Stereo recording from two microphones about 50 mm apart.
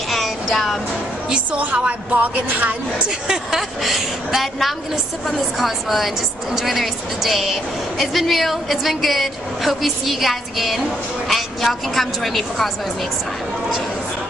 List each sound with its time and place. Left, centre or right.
0.1 s music: centre
1.6 s speech: right
3.3 s a woman's voice: centre